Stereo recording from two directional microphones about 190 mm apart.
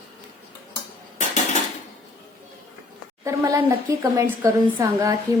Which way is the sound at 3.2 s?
15° right (ahead or behind).